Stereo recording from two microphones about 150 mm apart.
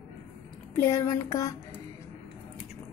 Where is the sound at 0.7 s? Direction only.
20° left (ahead or behind).